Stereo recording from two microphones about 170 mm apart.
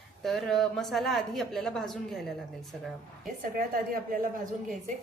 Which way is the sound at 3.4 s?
55° right (ahead or behind).